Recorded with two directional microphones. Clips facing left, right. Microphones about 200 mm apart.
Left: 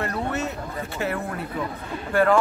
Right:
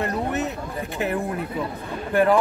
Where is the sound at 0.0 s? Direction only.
20° right (ahead or behind).